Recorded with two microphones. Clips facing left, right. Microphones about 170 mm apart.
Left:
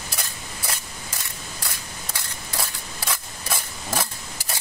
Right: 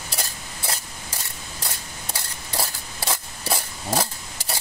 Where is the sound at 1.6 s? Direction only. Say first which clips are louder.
Right 4 dB; 30° right (ahead or behind).